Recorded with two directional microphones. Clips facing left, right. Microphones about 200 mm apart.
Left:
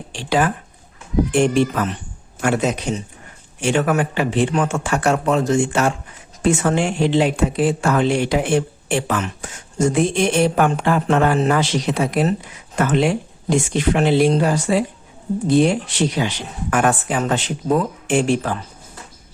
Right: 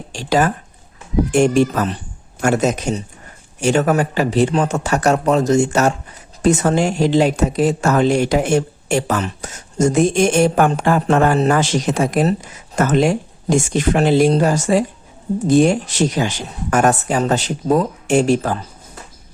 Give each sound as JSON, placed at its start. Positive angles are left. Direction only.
{"t": 0.1, "sound": "speech", "side_deg": -40}